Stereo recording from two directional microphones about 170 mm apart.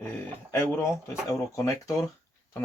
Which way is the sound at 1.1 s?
15° left (ahead or behind).